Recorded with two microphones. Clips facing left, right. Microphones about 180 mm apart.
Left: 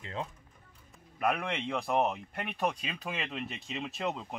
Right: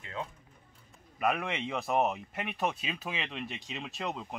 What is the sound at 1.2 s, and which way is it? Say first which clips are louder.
Speech: even; 5° right (ahead or behind).